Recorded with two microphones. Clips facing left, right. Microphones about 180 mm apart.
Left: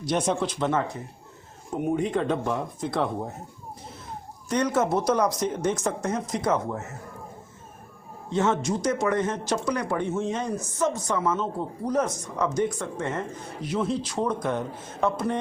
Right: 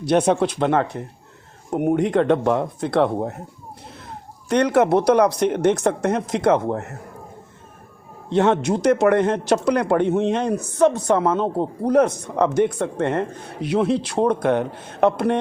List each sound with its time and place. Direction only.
0.0 s speech: 60° right (ahead or behind)
4.4 s speech: 65° right (ahead or behind)
8.3 s speech: 65° right (ahead or behind)